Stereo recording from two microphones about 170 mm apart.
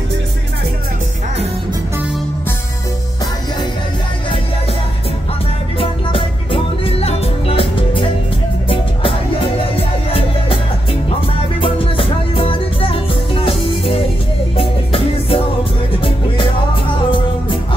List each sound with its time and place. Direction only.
5.8 s music: 30° left (ahead or behind)
11.6 s music: 30° left (ahead or behind)